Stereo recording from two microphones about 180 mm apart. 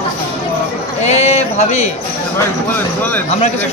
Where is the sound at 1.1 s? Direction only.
40° left (ahead or behind).